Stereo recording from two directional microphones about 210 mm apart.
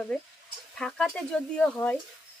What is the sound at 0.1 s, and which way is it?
Speech, 5° left (ahead or behind).